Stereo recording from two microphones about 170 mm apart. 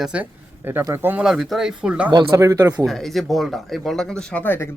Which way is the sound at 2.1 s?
25° right (ahead or behind).